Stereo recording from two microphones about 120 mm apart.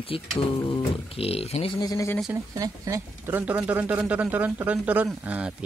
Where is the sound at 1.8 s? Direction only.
35° left (ahead or behind).